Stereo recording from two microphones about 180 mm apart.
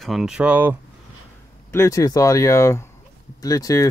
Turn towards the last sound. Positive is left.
turn(degrees=20)  # may be behind; listen again after turning